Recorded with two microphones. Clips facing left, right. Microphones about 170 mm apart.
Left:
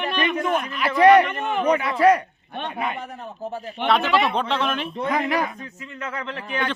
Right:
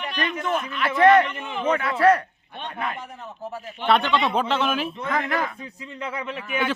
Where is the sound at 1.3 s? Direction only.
55° left (ahead or behind).